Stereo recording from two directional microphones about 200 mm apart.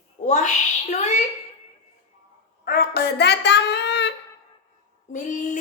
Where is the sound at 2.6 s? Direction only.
50° left (ahead or behind).